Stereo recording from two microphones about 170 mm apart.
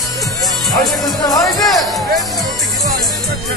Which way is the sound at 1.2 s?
20° left (ahead or behind).